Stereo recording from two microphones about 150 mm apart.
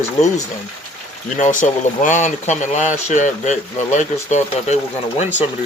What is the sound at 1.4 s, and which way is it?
Speech, 55° left (ahead or behind).